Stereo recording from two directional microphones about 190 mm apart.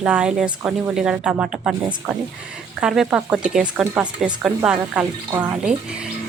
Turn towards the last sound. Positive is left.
turn(degrees=-5)  # may be behind; listen again after turning